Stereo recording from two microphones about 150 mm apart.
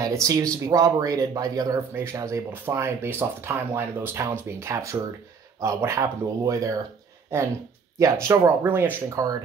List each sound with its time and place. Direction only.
0.0 s speech: 25° right (ahead or behind)